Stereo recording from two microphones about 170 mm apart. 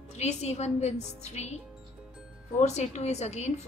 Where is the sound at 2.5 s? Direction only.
40° left (ahead or behind).